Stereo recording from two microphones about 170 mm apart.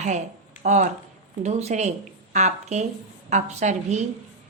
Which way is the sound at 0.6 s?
45° right (ahead or behind).